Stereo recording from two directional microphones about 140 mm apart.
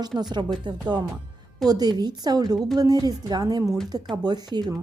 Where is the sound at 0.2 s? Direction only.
30° right (ahead or behind).